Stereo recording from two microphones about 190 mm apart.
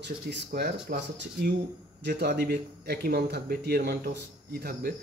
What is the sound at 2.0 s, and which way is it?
Speech, 60° right (ahead or behind).